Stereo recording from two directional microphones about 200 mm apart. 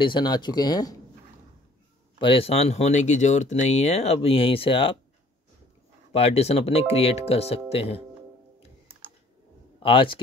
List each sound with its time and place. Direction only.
0.0 s speech: 20° left (ahead or behind)
2.1 s speech: 25° left (ahead or behind)
6.1 s speech: 30° left (ahead or behind)
9.8 s speech: 25° left (ahead or behind)